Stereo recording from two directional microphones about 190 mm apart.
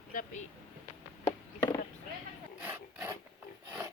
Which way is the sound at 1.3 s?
15° left (ahead or behind).